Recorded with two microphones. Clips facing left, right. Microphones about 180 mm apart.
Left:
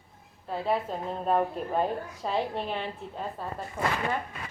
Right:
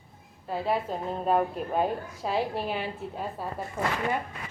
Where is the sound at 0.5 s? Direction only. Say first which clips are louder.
Even; centre (ahead or behind).